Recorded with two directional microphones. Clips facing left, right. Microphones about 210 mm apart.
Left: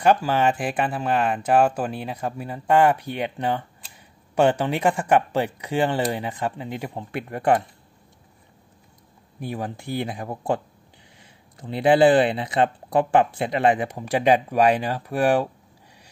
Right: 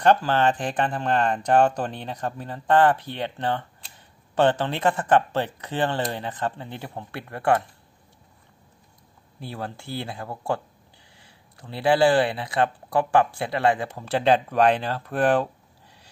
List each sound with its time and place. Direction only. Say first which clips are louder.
0.0 s speech: even; 10° left (ahead or behind)
9.4 s speech: left 4 dB; 15° left (ahead or behind)